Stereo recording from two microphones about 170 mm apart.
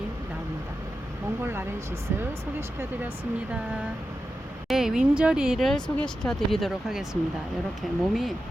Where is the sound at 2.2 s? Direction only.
15° right (ahead or behind).